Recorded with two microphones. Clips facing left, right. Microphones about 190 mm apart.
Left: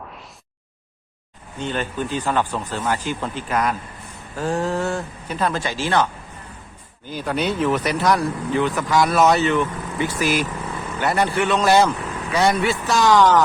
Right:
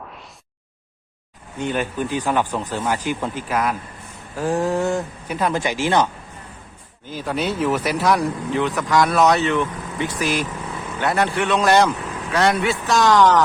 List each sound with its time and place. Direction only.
1.5 s speech: 10° right (ahead or behind)
7.1 s speech: centre (ahead or behind)